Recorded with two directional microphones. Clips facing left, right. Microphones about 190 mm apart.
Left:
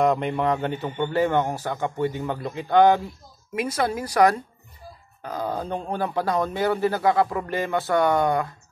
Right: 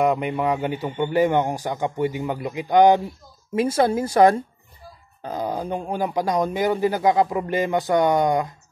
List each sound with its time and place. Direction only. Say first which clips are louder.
0.0 s speech: right 1 dB; 5° right (ahead or behind)
3.5 s speech: right 5 dB; 30° right (ahead or behind)